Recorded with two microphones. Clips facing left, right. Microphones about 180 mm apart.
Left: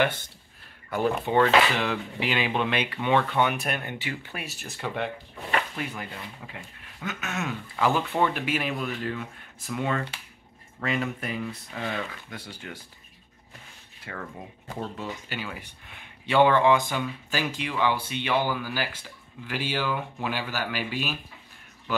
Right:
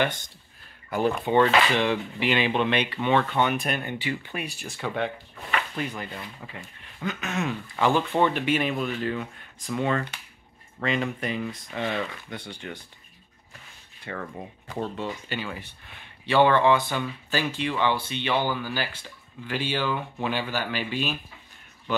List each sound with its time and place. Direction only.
0.8 s speech: 20° right (ahead or behind)
1.3 s speech: centre (ahead or behind)
4.1 s speech: 20° right (ahead or behind)
4.7 s speech: centre (ahead or behind)
6.8 s a sound: 5° left (ahead or behind)
7.8 s speech: centre (ahead or behind)
14.1 s speech: centre (ahead or behind)